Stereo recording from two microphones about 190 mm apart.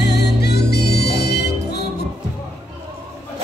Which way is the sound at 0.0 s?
60° left (ahead or behind).